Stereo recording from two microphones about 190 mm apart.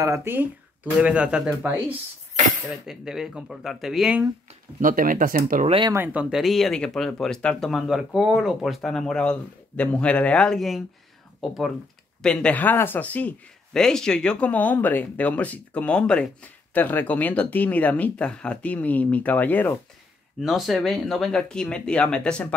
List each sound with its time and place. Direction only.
0.0 s speech: 15° right (ahead or behind)
2.9 s speech: centre (ahead or behind)
4.7 s speech: 45° right (ahead or behind)
5.7 s speech: 25° right (ahead or behind)
5.9 s speech: 10° right (ahead or behind)
12.2 s speech: 5° left (ahead or behind)